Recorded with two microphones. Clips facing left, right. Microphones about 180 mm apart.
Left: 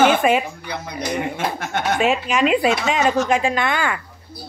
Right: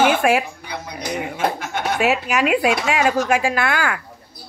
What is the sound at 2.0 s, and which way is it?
Speech, 5° right (ahead or behind).